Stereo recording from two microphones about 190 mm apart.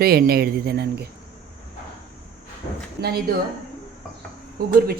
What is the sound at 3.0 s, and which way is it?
Speech, 55° right (ahead or behind).